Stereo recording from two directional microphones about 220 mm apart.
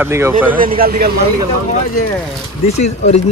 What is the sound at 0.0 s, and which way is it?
Speech, 10° right (ahead or behind).